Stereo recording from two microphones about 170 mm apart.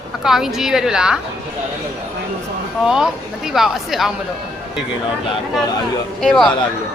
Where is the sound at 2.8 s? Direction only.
5° right (ahead or behind).